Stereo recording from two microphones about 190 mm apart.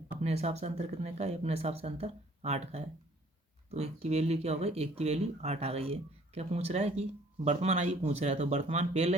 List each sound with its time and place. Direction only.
0.2 s speech: 35° right (ahead or behind)